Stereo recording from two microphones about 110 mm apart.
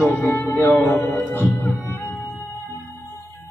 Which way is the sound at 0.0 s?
20° left (ahead or behind).